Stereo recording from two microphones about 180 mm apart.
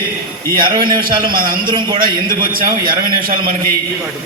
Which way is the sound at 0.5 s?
55° right (ahead or behind).